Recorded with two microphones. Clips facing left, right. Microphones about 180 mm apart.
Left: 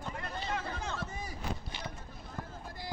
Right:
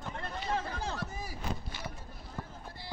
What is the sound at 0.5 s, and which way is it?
Speech, 35° right (ahead or behind).